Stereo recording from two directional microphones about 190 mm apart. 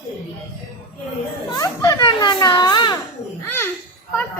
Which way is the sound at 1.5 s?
15° left (ahead or behind).